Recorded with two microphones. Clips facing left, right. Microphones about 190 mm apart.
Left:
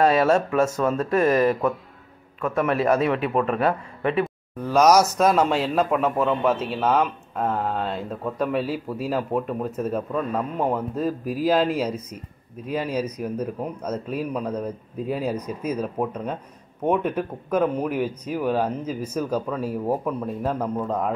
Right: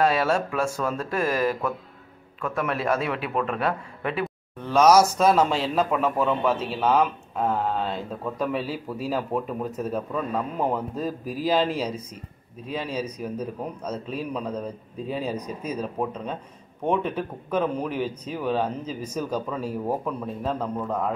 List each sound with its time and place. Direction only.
0.0 s speech: centre (ahead or behind)
2.4 s speech: centre (ahead or behind)
12.7 s speech: 5° left (ahead or behind)